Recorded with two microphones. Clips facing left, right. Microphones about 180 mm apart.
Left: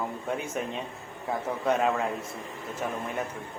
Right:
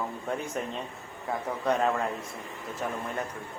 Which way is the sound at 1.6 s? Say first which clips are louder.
Left 1 dB; 5° left (ahead or behind).